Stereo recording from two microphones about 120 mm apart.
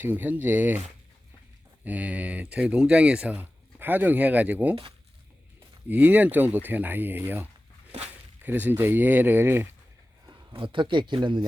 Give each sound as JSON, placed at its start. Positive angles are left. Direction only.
{"t": 0.0, "sound": "speech", "side_deg": -15}
{"t": 1.8, "sound": "speech", "side_deg": -10}
{"t": 4.7, "sound": "speech", "side_deg": -50}
{"t": 5.9, "sound": "speech", "side_deg": -15}
{"t": 8.4, "sound": "speech", "side_deg": -15}
{"t": 10.2, "sound": "speech", "side_deg": -45}